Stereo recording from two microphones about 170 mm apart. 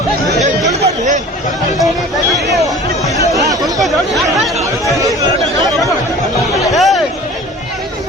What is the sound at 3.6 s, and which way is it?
Chatter, centre (ahead or behind).